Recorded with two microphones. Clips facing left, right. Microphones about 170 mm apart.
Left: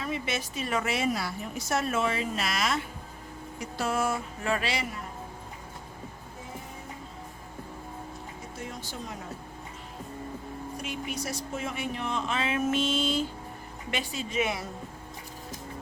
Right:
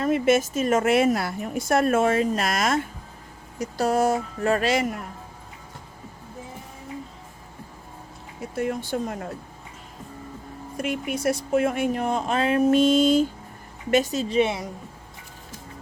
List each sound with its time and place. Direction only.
0.0 s a woman's voice: 50° right (ahead or behind)
8.5 s speech: 60° right (ahead or behind)
10.8 s a woman's voice: 55° right (ahead or behind); by 14.6 s 30° right (ahead or behind)